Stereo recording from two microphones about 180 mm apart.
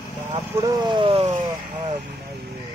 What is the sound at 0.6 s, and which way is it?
Speech, 20° right (ahead or behind).